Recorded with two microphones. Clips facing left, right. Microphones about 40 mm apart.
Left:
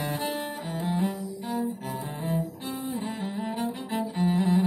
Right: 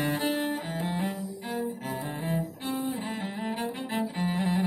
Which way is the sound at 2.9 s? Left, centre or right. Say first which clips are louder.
Left 2 dB; right.